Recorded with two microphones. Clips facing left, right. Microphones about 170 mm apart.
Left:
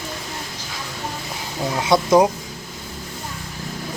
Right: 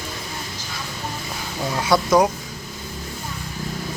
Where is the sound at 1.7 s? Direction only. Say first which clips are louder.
Left 2 dB; 20° left (ahead or behind).